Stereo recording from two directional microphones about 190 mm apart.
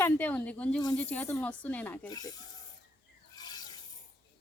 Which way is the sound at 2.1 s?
20° left (ahead or behind).